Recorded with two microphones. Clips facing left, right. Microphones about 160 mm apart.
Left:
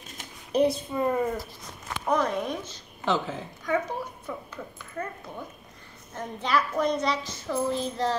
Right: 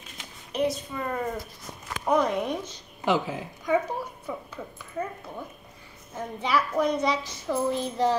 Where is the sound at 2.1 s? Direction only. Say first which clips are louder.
Right 2 dB; 10° right (ahead or behind).